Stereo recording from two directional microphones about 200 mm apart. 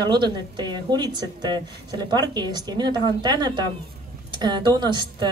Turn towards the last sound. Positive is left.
turn(degrees=-20)  # may be behind; listen again after turning